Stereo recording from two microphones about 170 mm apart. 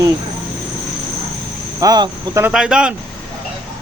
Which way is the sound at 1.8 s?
20° right (ahead or behind).